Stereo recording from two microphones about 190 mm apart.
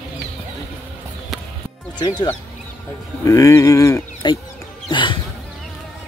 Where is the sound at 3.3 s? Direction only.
15° left (ahead or behind).